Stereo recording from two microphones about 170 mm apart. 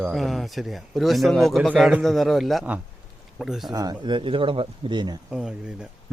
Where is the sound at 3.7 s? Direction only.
25° right (ahead or behind).